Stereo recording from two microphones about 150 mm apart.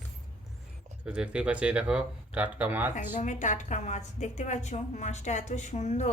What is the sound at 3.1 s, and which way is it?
A woman's voice, 55° left (ahead or behind).